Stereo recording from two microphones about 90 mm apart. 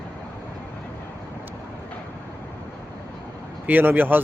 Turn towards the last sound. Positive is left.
turn(degrees=-20)  # may be behind; listen again after turning